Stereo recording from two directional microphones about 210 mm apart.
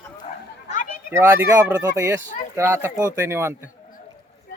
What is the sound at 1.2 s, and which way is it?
Speech, 10° right (ahead or behind).